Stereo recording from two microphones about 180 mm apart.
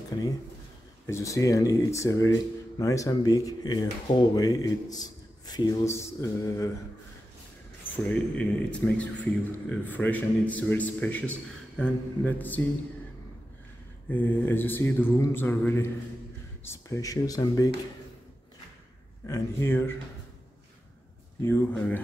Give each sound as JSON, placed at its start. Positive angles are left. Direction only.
{"t": 1.0, "sound": "a man's voice", "side_deg": 15}
{"t": 7.9, "sound": "a man's voice", "side_deg": 5}
{"t": 14.0, "sound": "a man's voice", "side_deg": 10}
{"t": 19.2, "sound": "a man's voice", "side_deg": 15}
{"t": 21.4, "sound": "a man's voice", "side_deg": 10}